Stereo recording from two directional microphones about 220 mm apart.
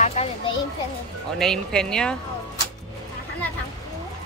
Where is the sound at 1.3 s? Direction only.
Centre (ahead or behind).